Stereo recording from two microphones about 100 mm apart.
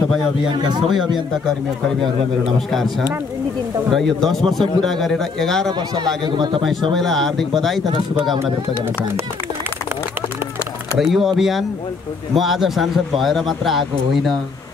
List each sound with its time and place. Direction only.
0.5 s a man's voice: 45° right (ahead or behind)
0.8 s a man's voice: centre (ahead or behind)
3.9 s a man's voice: 5° left (ahead or behind)
5.7 s a man's voice: 45° right (ahead or behind)
6.6 s a man's voice: centre (ahead or behind)
8.4 s speech: 25° right (ahead or behind)
11.0 s a man's voice: centre (ahead or behind)